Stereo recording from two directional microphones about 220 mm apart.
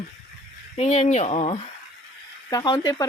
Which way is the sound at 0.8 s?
30° left (ahead or behind).